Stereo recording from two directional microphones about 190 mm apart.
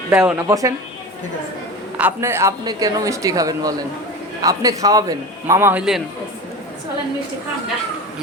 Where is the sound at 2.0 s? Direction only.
10° right (ahead or behind).